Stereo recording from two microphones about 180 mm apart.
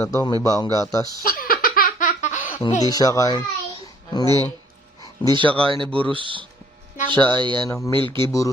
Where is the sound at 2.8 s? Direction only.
20° left (ahead or behind).